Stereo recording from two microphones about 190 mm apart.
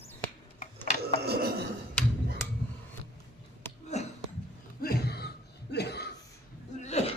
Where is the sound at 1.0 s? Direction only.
55° right (ahead or behind).